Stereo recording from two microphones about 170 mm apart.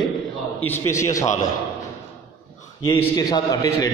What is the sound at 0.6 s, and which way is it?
Speech, 15° left (ahead or behind).